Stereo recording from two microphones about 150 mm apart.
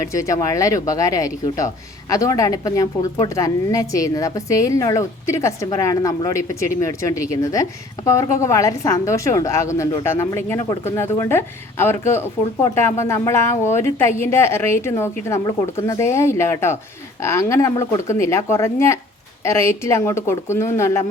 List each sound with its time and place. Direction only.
0.1 s a woman's voice: 20° left (ahead or behind)